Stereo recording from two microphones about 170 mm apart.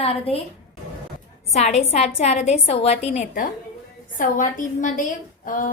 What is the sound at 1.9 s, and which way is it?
A woman's voice, 40° left (ahead or behind).